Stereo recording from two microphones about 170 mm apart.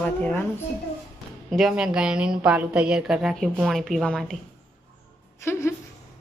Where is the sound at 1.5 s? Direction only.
5° right (ahead or behind).